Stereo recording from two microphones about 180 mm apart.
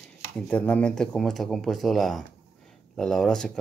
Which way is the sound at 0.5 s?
5° left (ahead or behind).